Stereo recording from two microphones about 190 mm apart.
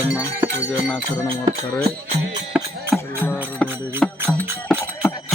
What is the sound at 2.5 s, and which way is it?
Music, 10° right (ahead or behind).